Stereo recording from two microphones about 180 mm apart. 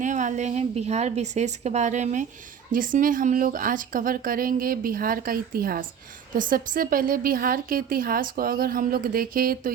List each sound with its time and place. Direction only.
0.0 s a woman's voice: 45° right (ahead or behind)